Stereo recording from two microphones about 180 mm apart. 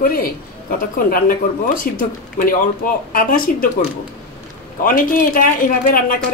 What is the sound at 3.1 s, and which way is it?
Speech, 50° left (ahead or behind).